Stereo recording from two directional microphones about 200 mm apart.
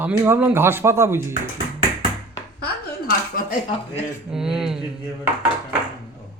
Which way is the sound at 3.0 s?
45° left (ahead or behind).